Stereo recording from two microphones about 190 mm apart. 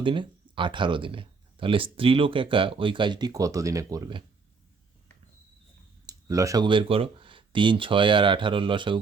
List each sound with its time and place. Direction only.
0.0 s speech: 25° right (ahead or behind)
6.1 s speech: 15° right (ahead or behind)